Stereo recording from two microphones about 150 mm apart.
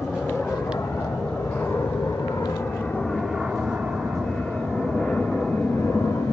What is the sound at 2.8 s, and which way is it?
Vehicle, 5° left (ahead or behind).